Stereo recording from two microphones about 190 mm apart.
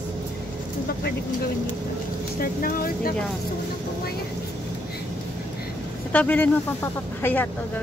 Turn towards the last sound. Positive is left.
turn(degrees=10)  # may be behind; listen again after turning